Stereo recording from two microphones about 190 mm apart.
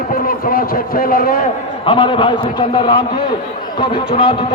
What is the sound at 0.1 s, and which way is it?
A man's voice, 45° left (ahead or behind).